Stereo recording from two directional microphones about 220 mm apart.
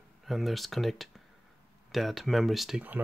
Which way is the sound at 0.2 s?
Centre (ahead or behind).